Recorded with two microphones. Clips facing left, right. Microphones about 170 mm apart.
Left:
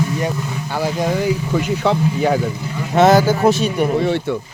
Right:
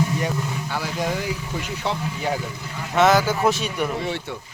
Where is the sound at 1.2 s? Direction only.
65° left (ahead or behind).